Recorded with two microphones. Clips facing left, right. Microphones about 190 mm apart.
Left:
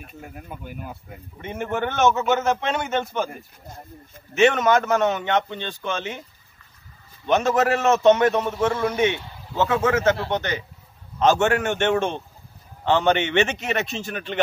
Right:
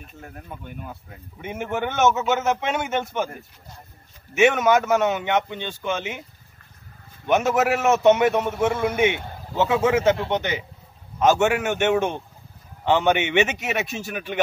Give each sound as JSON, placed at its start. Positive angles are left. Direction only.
{"t": 0.0, "sound": "speech", "side_deg": 5}
{"t": 1.4, "sound": "a man's voice", "side_deg": -10}
{"t": 4.3, "sound": "a man's voice", "side_deg": -10}
{"t": 7.2, "sound": "a man's voice", "side_deg": -10}